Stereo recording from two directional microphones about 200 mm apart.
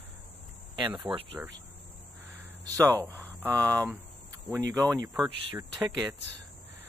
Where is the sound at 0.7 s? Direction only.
25° right (ahead or behind).